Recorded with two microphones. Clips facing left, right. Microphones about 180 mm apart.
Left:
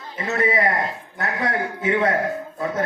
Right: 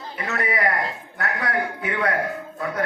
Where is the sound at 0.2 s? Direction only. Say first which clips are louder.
Left 4 dB; 25° left (ahead or behind).